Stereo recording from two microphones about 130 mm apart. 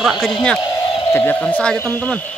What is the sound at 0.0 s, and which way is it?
Speech, centre (ahead or behind).